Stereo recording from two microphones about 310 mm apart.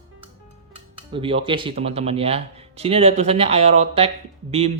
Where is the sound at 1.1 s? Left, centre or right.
Centre.